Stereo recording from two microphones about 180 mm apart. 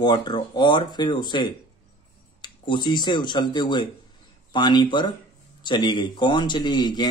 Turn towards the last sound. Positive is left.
turn(degrees=25)  # may be behind; listen again after turning